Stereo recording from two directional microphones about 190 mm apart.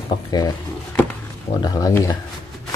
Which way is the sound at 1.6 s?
20° left (ahead or behind).